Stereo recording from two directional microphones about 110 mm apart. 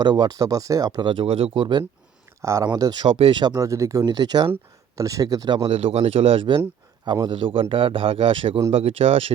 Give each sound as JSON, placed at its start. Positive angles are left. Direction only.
{"t": 0.0, "sound": "speech", "side_deg": -40}
{"t": 2.4, "sound": "speech", "side_deg": -25}
{"t": 2.7, "sound": "speech", "side_deg": -40}
{"t": 3.1, "sound": "speech", "side_deg": -60}
{"t": 3.3, "sound": "speech", "side_deg": -40}
{"t": 5.6, "sound": "speech", "side_deg": -65}
{"t": 7.0, "sound": "a man's voice", "side_deg": -45}